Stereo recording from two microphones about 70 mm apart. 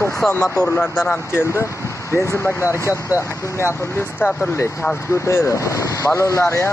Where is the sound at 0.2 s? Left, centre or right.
Centre.